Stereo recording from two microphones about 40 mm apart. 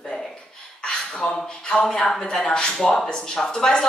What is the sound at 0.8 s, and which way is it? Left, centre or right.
A woman's voice, left.